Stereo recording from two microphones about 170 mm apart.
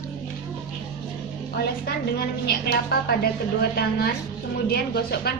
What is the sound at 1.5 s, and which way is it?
A woman's voice, 70° left (ahead or behind).